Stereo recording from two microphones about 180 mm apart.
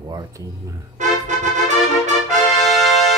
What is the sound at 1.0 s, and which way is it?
Music, 40° right (ahead or behind).